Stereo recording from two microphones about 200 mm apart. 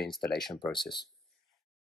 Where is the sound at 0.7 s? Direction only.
25° left (ahead or behind).